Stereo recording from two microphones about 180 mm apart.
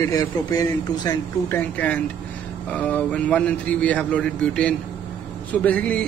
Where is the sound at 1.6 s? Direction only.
10° left (ahead or behind).